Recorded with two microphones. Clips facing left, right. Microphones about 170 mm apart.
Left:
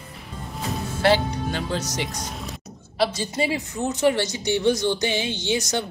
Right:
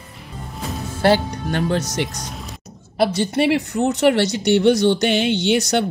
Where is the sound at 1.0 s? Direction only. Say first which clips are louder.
Right 3 dB; 50° right (ahead or behind).